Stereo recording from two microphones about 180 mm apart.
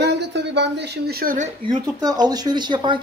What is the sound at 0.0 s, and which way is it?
Speech, 70° right (ahead or behind).